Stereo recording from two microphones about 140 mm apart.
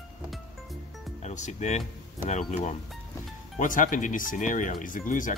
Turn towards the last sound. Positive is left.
turn(degrees=65)  # may be behind; listen again after turning